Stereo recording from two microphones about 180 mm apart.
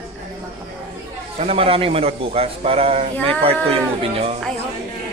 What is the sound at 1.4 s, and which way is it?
A man's voice, 35° right (ahead or behind).